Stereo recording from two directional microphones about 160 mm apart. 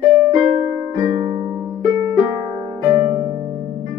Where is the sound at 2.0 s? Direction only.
10° right (ahead or behind).